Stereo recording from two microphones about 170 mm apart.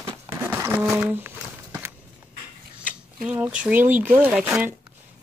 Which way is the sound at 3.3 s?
5° right (ahead or behind).